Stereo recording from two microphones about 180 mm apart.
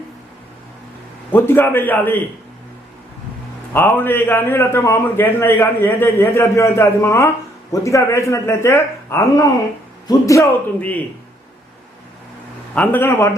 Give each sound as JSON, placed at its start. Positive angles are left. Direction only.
{"t": 1.3, "sound": "a man's voice", "side_deg": 10}
{"t": 3.7, "sound": "a man's voice", "side_deg": 10}
{"t": 12.7, "sound": "a man's voice", "side_deg": 10}